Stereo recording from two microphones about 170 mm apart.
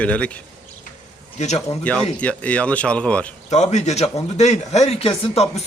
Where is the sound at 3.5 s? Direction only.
40° left (ahead or behind).